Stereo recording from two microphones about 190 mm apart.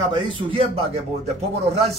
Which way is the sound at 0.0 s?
25° right (ahead or behind).